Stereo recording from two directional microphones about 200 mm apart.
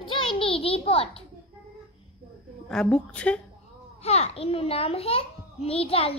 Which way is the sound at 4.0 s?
30° left (ahead or behind).